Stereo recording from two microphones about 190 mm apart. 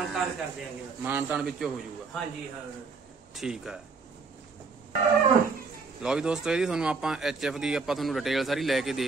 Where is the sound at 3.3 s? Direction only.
5° right (ahead or behind).